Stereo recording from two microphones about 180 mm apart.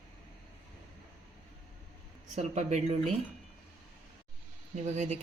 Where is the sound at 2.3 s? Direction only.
40° right (ahead or behind).